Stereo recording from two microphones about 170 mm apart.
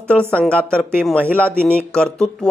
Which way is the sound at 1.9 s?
5° left (ahead or behind).